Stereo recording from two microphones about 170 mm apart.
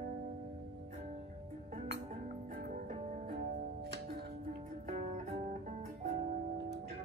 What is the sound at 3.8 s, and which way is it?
Music, 75° right (ahead or behind).